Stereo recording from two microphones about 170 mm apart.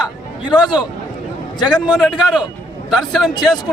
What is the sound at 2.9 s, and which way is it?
Speech, centre (ahead or behind).